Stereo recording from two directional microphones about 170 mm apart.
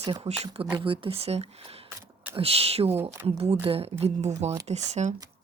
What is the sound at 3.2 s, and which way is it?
Speech, 35° right (ahead or behind).